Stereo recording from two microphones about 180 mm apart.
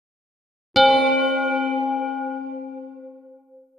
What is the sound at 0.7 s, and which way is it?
Music, centre (ahead or behind).